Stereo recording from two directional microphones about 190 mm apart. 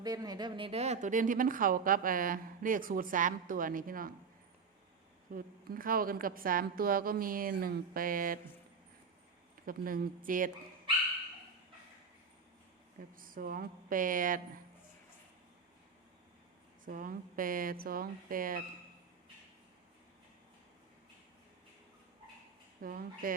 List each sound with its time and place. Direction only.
0.0 s speech: 20° right (ahead or behind); by 4.1 s 45° right (ahead or behind)
5.3 s speech: 45° right (ahead or behind)
9.6 s speech: 50° right (ahead or behind)
13.1 s speech: 50° right (ahead or behind)
16.8 s speech: 45° right (ahead or behind)
22.8 s speech: 50° right (ahead or behind)